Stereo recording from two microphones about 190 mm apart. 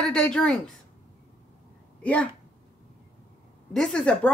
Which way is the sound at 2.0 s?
5° left (ahead or behind).